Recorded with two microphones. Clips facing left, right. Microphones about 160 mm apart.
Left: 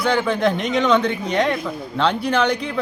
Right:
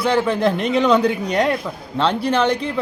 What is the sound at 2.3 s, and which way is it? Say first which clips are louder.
Speech: right 2 dB; 30° right (ahead or behind).